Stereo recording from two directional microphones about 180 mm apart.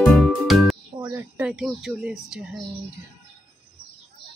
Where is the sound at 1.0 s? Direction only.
15° right (ahead or behind).